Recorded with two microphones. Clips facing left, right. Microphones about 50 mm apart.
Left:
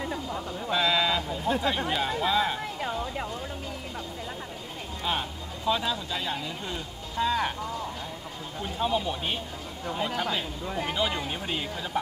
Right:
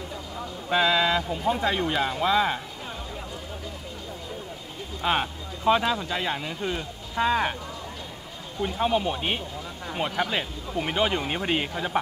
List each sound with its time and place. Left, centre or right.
0.7 s a sound: right
1.5 s speech: right
1.8 s speech: centre
2.1 s speech: right
5.0 s speech: right
8.6 s speech: right